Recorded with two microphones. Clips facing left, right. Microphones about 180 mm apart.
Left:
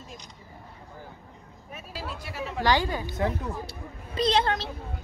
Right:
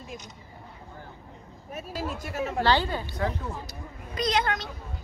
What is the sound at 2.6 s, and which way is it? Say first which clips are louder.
Speech: left 1 dB; 15° left (ahead or behind).